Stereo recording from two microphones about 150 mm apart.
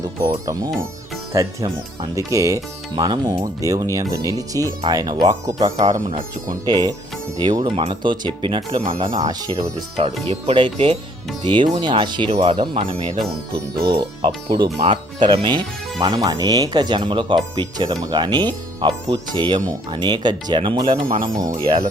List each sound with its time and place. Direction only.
1.3 s speech: 25° right (ahead or behind)